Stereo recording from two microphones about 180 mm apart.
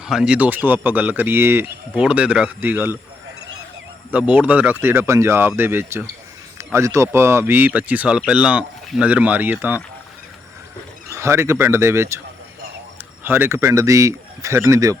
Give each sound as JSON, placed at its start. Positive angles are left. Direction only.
{"t": 0.0, "sound": "speech", "side_deg": -5}
{"t": 4.1, "sound": "speech", "side_deg": -5}
{"t": 11.1, "sound": "speech", "side_deg": -15}
{"t": 13.2, "sound": "speech", "side_deg": -10}